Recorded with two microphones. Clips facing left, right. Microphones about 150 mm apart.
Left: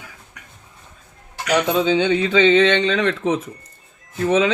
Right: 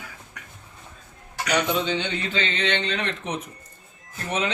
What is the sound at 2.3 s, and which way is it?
Speech, 90° left.